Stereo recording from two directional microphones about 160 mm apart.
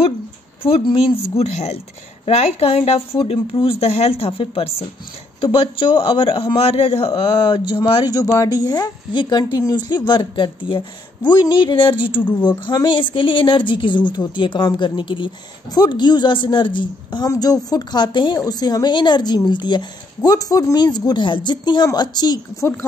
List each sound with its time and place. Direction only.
0.6 s a man's voice: 35° left (ahead or behind)
7.1 s speech: 25° left (ahead or behind)